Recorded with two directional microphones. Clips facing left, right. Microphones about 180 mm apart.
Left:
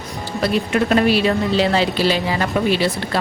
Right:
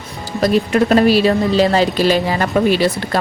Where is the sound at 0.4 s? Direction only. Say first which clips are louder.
Right 4 dB; 40° right (ahead or behind).